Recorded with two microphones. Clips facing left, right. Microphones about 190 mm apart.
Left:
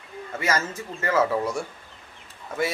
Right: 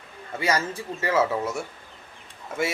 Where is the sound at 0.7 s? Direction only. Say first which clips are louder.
Right 1 dB; 35° right (ahead or behind).